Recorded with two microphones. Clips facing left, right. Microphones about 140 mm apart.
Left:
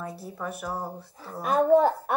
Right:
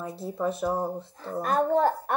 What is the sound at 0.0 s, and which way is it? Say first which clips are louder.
Speech: right 5 dB; 25° right (ahead or behind).